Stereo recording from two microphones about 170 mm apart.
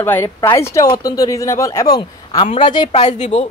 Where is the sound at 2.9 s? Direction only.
45° left (ahead or behind).